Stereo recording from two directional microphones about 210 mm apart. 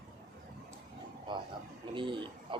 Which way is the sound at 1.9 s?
25° right (ahead or behind).